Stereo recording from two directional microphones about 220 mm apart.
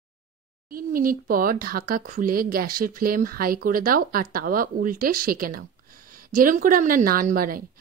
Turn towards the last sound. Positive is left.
turn(degrees=-40)  # may be behind; listen again after turning